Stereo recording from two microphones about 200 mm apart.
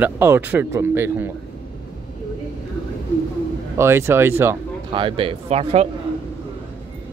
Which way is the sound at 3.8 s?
10° right (ahead or behind).